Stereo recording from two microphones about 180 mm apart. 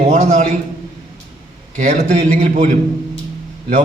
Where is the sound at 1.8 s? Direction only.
40° right (ahead or behind).